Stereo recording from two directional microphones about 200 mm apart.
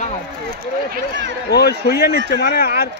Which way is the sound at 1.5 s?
55° left (ahead or behind).